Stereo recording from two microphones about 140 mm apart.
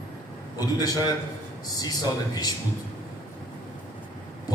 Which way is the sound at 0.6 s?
25° left (ahead or behind).